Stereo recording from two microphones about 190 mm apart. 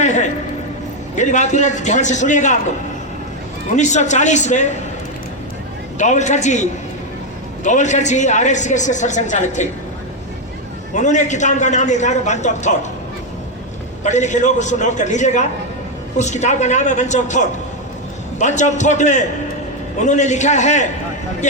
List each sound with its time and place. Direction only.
0.0 s a sound: 40° left (ahead or behind)
1.1 s speech: 40° left (ahead or behind)
3.8 s speech: 40° left (ahead or behind)
6.0 s speech: 40° left (ahead or behind)
10.9 s speech: 40° left (ahead or behind)
14.0 s speech: 40° left (ahead or behind)